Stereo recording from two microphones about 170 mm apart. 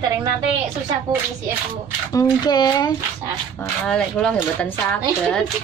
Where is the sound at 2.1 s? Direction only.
20° left (ahead or behind).